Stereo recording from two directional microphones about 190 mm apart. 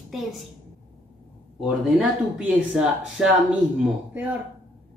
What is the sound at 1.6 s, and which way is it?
Speech, 5° right (ahead or behind).